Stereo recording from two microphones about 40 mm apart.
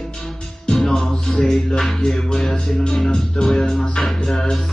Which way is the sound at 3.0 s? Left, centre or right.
Centre.